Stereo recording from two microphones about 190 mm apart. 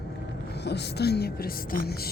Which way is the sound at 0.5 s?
60° left (ahead or behind).